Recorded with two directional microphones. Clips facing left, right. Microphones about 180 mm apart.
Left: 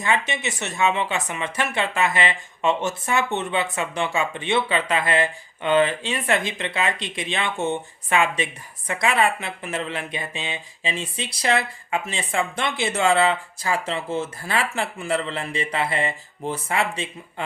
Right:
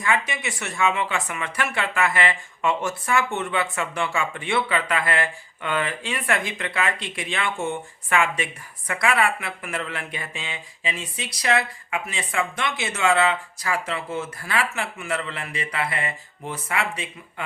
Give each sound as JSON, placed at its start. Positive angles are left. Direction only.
{"t": 0.0, "sound": "speech", "side_deg": 25}